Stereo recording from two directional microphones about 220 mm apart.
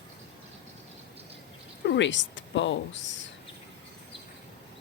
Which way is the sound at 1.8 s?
55° left (ahead or behind).